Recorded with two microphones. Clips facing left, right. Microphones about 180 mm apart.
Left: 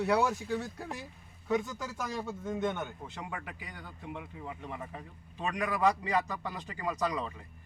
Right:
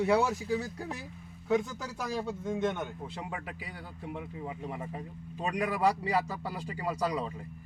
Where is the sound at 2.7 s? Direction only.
10° right (ahead or behind).